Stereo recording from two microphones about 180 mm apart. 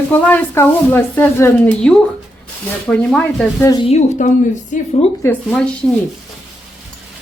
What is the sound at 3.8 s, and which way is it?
A woman's voice, 40° left (ahead or behind).